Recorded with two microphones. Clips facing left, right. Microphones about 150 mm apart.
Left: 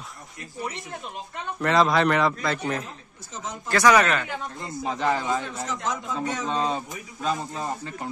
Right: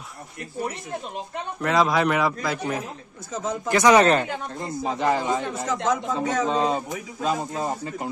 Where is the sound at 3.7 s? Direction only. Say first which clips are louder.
Right 3 dB; 20° right (ahead or behind).